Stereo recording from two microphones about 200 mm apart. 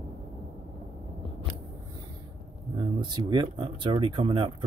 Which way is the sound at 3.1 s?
20° right (ahead or behind).